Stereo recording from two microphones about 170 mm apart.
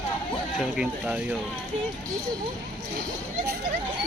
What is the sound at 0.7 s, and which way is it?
Speech, 5° right (ahead or behind).